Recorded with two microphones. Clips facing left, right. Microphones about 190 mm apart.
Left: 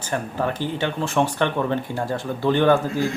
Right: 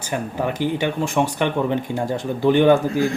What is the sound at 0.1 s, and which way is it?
Speech, 15° right (ahead or behind).